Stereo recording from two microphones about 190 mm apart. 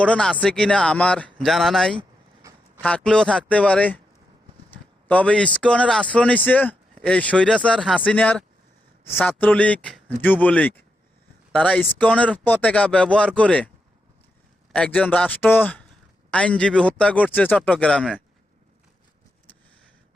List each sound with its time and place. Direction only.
0.0 s speech: 5° left (ahead or behind)
2.4 s a sound: 15° right (ahead or behind)
2.8 s speech: 5° left (ahead or behind)
5.0 s speech: 5° left (ahead or behind)
14.7 s speech: 5° left (ahead or behind)